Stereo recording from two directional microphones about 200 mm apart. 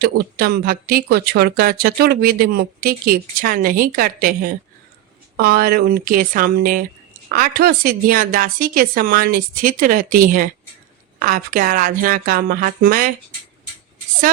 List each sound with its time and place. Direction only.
0.0 s speech: 50° right (ahead or behind)